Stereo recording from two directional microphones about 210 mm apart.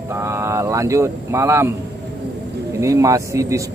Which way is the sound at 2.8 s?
15° right (ahead or behind).